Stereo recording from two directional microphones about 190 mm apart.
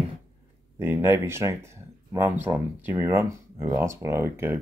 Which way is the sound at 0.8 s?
10° right (ahead or behind).